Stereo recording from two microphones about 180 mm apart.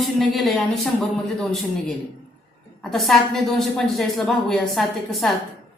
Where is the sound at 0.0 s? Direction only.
Centre (ahead or behind).